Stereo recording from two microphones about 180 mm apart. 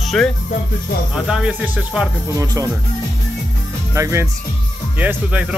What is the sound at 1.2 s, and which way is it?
Speech, 5° right (ahead or behind).